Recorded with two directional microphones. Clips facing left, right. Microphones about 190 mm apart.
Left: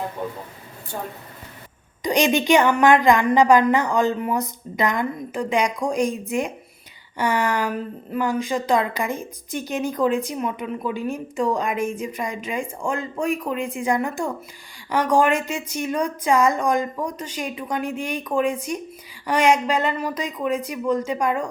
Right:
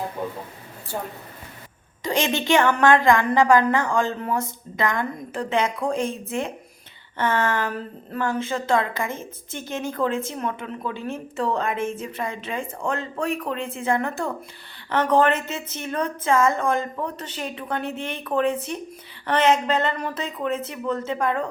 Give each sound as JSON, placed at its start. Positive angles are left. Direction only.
{"t": 2.0, "sound": "a woman's voice", "side_deg": 15}